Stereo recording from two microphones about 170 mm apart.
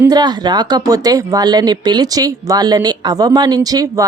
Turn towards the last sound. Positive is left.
turn(degrees=-20)  # may be behind; listen again after turning